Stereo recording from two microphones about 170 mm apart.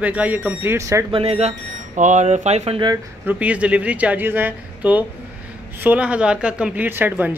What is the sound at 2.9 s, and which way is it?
Speech, 10° right (ahead or behind).